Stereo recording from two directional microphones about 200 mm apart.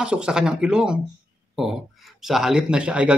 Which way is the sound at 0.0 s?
5° right (ahead or behind).